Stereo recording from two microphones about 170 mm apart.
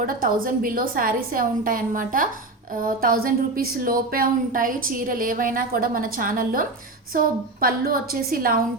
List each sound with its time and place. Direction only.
0.0 s speech: 55° right (ahead or behind)